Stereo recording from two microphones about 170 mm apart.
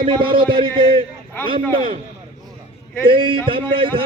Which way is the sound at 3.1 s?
30° right (ahead or behind).